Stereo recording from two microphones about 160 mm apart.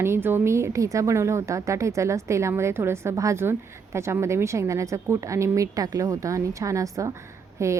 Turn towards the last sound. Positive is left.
turn(degrees=-20)  # may be behind; listen again after turning